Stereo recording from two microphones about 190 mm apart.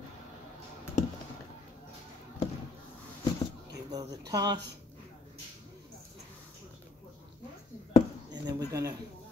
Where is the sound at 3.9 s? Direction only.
20° right (ahead or behind).